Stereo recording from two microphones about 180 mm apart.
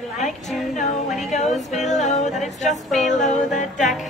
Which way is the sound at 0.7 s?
40° left (ahead or behind).